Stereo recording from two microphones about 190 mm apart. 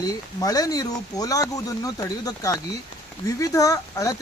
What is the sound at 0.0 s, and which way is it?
Speech, 20° left (ahead or behind).